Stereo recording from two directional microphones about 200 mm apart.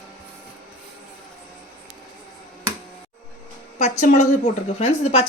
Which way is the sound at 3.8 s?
35° left (ahead or behind).